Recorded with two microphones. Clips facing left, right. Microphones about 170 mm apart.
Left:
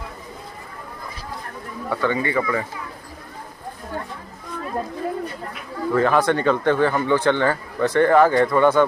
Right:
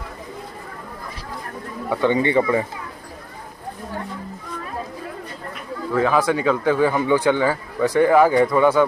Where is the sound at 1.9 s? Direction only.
20° right (ahead or behind).